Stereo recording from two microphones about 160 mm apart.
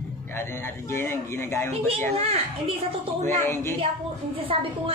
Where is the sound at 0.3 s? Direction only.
15° left (ahead or behind).